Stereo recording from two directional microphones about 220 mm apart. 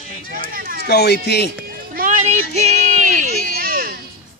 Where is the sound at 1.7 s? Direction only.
40° right (ahead or behind).